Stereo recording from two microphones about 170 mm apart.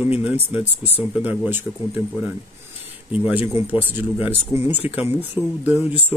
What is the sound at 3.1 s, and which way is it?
Speech, 10° right (ahead or behind).